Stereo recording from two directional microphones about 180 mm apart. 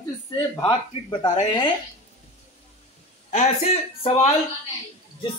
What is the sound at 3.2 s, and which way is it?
Speech, 35° left (ahead or behind).